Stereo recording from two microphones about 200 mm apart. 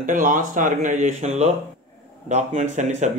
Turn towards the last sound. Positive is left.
turn(degrees=-35)  # may be behind; listen again after turning